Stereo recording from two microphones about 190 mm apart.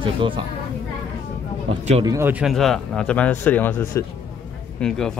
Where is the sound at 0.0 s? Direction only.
25° right (ahead or behind).